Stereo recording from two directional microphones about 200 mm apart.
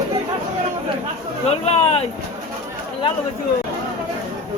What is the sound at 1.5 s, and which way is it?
Speech, 30° left (ahead or behind).